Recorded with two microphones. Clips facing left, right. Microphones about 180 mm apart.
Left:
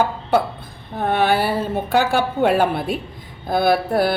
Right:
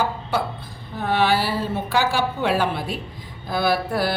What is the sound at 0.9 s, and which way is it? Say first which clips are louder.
Speech: left 2 dB; 55° left (ahead or behind).